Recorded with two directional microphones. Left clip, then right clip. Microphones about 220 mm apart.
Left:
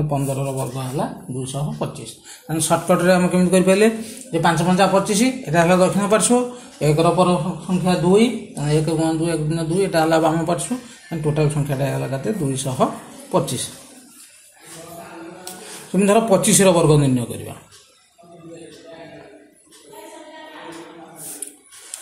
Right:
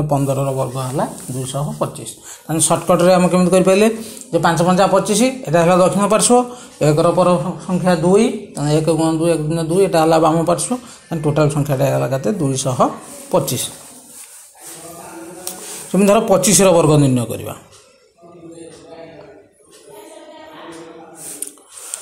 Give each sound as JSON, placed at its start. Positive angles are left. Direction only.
{"t": 0.1, "sound": "a man's voice", "side_deg": -20}
{"t": 2.5, "sound": "a man's voice", "side_deg": -20}
{"t": 15.4, "sound": "a man's voice", "side_deg": -20}